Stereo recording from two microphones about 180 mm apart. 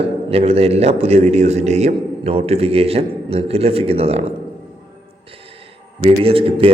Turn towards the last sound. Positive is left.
turn(degrees=-30)  # may be behind; listen again after turning